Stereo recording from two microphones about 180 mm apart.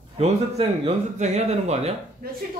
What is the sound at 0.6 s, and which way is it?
Speech, 35° right (ahead or behind).